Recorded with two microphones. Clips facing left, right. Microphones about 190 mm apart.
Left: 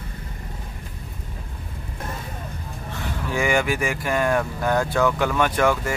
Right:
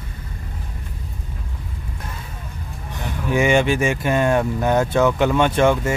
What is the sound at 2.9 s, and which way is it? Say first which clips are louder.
Speech: right 5 dB; 20° right (ahead or behind).